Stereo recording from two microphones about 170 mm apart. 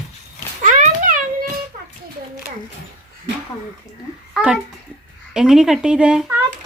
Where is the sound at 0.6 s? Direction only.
50° right (ahead or behind).